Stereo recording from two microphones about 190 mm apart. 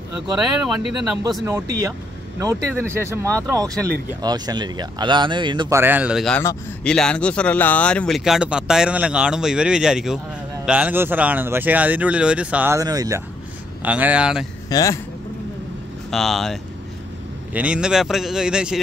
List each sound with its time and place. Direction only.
1.4 s speech: 15° right (ahead or behind)
5.8 s speech: 10° right (ahead or behind)
13.8 s speech: 10° right (ahead or behind)
14.7 s speech: 20° left (ahead or behind)
16.1 s speech: centre (ahead or behind)
17.6 s speech: 5° right (ahead or behind)